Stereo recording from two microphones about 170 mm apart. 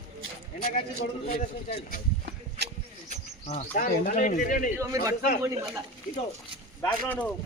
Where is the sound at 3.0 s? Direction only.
40° left (ahead or behind).